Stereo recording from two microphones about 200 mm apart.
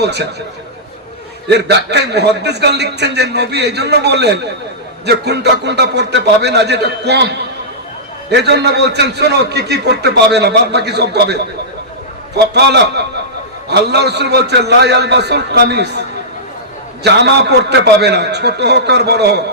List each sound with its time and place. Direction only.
0.0 s a man's voice: 55° right (ahead or behind)
1.5 s a man's voice: 55° right (ahead or behind)